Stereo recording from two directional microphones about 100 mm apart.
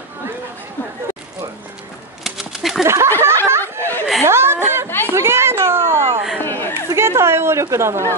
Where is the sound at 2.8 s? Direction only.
25° right (ahead or behind).